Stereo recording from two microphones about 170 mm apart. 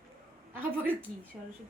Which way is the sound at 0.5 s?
10° right (ahead or behind).